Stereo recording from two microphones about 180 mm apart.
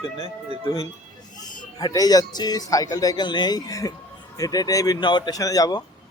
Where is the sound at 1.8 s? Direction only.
20° left (ahead or behind).